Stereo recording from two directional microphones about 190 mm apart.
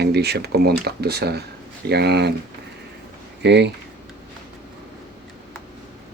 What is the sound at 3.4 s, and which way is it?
Speech, 65° right (ahead or behind).